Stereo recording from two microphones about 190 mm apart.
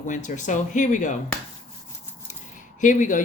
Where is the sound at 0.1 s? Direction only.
40° left (ahead or behind).